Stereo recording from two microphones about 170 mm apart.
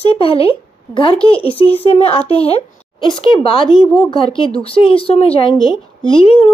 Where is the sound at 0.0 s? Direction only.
35° left (ahead or behind).